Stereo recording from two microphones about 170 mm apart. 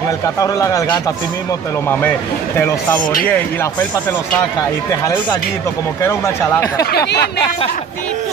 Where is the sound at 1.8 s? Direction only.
10° left (ahead or behind).